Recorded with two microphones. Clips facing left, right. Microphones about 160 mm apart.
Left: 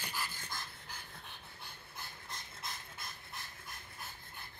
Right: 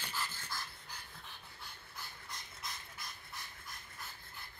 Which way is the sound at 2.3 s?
25° left (ahead or behind).